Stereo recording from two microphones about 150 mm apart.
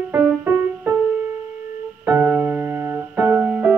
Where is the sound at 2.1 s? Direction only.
15° right (ahead or behind).